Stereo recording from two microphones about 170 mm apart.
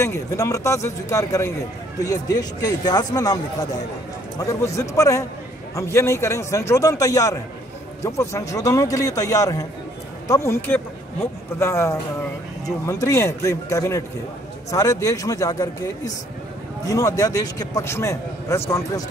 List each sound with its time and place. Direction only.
0.0 s a man's voice: 20° left (ahead or behind)
4.4 s a man's voice: 15° left (ahead or behind)